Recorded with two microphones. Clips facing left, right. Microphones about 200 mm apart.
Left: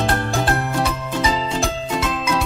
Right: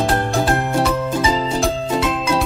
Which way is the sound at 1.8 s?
30° right (ahead or behind).